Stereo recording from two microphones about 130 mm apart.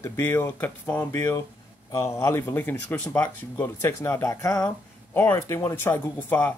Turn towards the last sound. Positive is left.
turn(degrees=15)  # may be behind; listen again after turning